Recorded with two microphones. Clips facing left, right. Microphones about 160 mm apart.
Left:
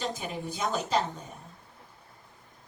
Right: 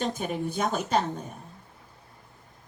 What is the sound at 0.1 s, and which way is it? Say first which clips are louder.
Speech: right 5 dB; 55° right (ahead or behind).